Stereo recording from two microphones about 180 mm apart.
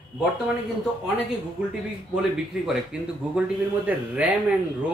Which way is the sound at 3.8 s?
10° right (ahead or behind).